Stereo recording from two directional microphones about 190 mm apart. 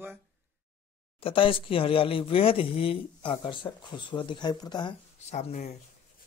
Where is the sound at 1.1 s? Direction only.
30° left (ahead or behind).